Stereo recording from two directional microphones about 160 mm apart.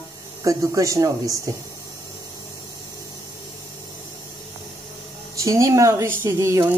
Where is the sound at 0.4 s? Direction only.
20° right (ahead or behind).